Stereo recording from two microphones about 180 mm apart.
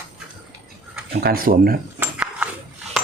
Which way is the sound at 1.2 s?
55° right (ahead or behind).